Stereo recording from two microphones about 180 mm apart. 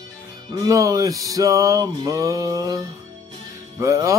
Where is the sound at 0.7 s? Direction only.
20° right (ahead or behind).